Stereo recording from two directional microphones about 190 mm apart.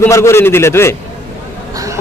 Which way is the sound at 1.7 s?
20° right (ahead or behind).